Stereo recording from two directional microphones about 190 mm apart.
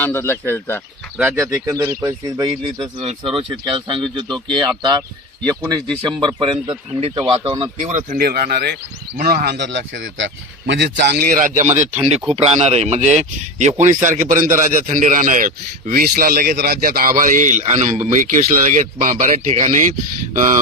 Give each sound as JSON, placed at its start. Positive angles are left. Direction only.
{"t": 0.0, "sound": "speech", "side_deg": 10}
{"t": 1.2, "sound": "speech", "side_deg": -15}
{"t": 8.1, "sound": "speech", "side_deg": -50}
{"t": 11.3, "sound": "a man's voice", "side_deg": -45}